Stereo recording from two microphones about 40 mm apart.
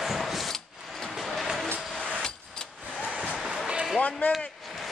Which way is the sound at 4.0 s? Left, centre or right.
Left.